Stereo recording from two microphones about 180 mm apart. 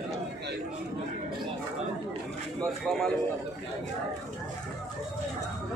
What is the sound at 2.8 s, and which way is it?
Speech, centre (ahead or behind).